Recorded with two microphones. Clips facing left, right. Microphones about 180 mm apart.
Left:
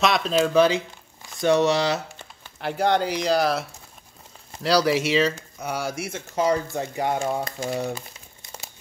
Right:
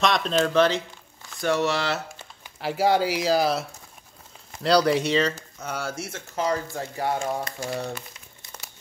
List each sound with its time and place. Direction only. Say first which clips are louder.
0.0 s speech: left 1 dB; 5° left (ahead or behind)
2.6 s speech: even; 5° right (ahead or behind)
4.6 s speech: even; 5° left (ahead or behind)